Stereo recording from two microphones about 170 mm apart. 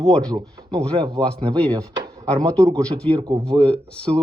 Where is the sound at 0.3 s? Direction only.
20° right (ahead or behind).